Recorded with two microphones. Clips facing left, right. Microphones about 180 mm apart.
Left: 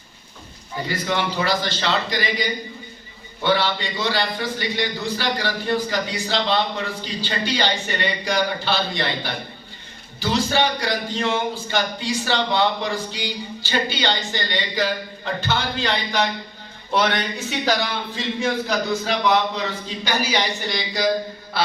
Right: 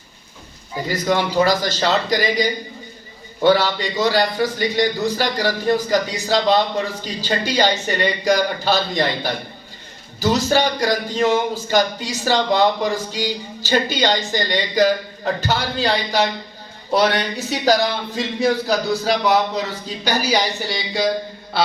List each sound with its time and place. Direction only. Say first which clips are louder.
0.9 s speech: right 5 dB; 40° right (ahead or behind)